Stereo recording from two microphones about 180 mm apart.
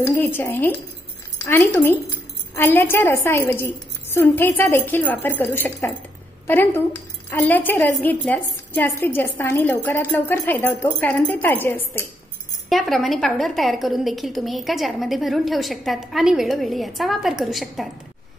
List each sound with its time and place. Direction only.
0.0 s a woman's voice: 15° left (ahead or behind)
12.6 s a woman's voice: centre (ahead or behind)